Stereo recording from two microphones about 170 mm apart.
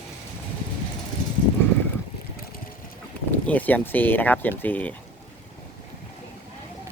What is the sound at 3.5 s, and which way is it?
Speech, 10° left (ahead or behind).